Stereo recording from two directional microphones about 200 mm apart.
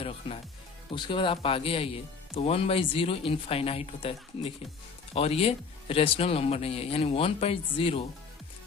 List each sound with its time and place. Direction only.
0.3 s speech: 25° left (ahead or behind)